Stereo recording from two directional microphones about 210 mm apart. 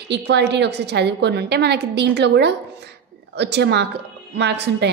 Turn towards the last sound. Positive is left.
turn(degrees=-55)  # may be behind; listen again after turning